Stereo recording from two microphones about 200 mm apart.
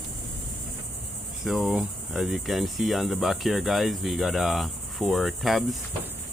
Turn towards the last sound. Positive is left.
turn(degrees=0)  # may be behind; listen again after turning